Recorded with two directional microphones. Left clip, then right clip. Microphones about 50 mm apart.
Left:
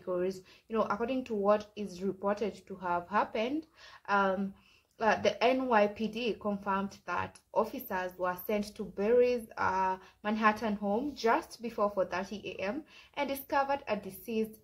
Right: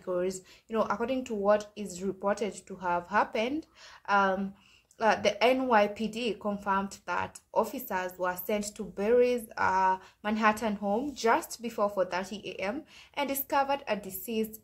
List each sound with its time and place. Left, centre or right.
0.0 s speech: right
2.7 s speech: right